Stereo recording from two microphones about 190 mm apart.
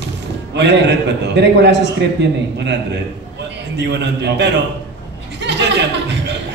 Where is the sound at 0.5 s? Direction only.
65° right (ahead or behind).